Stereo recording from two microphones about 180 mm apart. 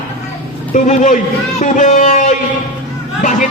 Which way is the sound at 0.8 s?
45° left (ahead or behind).